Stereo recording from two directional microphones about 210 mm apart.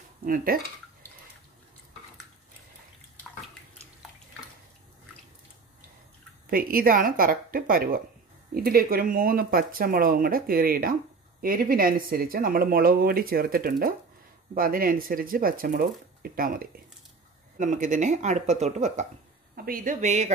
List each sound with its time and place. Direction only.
0.2 s speech: 40° right (ahead or behind)
6.5 s a woman's voice: 45° right (ahead or behind)